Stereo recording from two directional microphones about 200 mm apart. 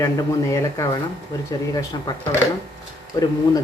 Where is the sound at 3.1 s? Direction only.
15° left (ahead or behind).